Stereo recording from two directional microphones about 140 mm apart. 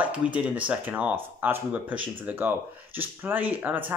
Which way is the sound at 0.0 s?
10° right (ahead or behind).